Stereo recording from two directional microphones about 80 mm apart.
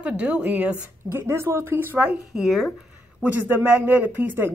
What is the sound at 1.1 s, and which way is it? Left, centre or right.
A woman's voice, right.